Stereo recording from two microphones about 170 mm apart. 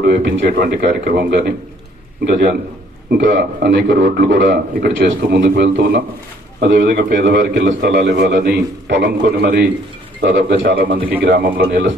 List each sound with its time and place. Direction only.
0.0 s a man's voice: 70° right (ahead or behind)
3.3 s a man's voice: 85° right
11.0 s a man's voice: 10° right (ahead or behind)
11.2 s a man's voice: 60° right (ahead or behind)